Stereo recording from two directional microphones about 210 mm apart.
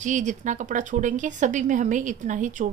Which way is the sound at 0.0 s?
35° right (ahead or behind).